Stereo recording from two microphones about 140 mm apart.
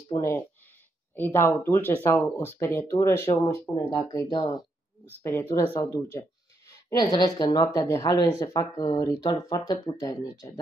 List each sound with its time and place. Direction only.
1.1 s speech: 15° left (ahead or behind)
5.2 s speech: 15° left (ahead or behind)